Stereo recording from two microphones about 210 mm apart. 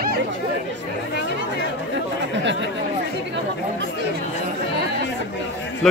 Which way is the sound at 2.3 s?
60° right (ahead or behind).